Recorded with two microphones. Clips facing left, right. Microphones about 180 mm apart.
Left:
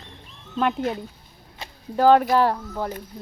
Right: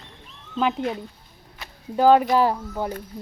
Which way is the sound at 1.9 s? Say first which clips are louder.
Even; 5° right (ahead or behind).